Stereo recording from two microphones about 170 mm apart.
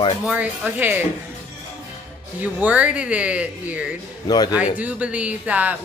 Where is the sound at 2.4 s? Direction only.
10° right (ahead or behind).